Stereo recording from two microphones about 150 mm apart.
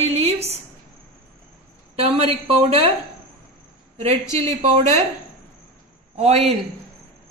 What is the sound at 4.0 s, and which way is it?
A woman's voice, 45° right (ahead or behind).